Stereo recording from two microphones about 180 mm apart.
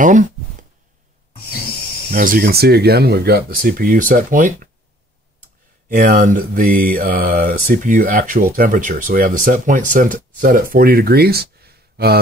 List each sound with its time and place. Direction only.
0.0 s a sound: 45° right (ahead or behind)
2.1 s speech: 50° right (ahead or behind)
5.9 s speech: 50° right (ahead or behind)